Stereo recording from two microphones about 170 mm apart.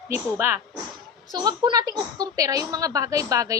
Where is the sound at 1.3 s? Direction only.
25° right (ahead or behind).